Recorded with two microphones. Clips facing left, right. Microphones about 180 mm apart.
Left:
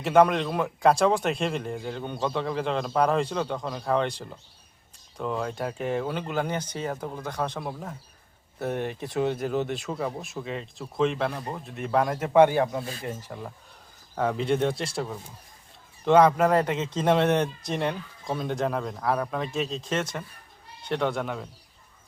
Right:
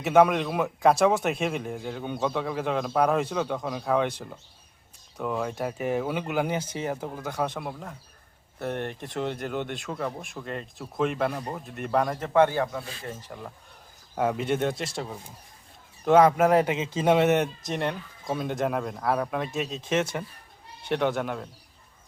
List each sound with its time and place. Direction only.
0.0 s a man's voice: 5° right (ahead or behind)
5.1 s a man's voice: 5° right (ahead or behind); by 12.8 s 15° left (ahead or behind)
13.3 s a man's voice: centre (ahead or behind)
16.0 s a man's voice: 5° right (ahead or behind)